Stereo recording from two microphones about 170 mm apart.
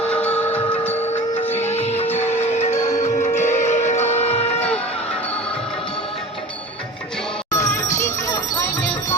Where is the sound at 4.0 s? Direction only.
40° left (ahead or behind).